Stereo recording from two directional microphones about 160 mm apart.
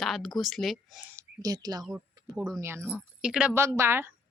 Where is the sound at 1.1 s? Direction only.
25° right (ahead or behind).